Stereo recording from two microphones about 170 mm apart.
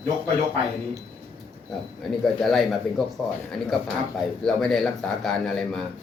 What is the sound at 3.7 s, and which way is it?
A man's voice, centre (ahead or behind).